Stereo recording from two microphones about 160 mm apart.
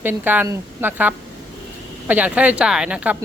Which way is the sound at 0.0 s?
10° right (ahead or behind).